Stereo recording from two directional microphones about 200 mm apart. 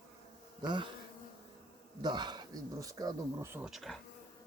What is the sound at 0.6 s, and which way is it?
Bee, 20° right (ahead or behind).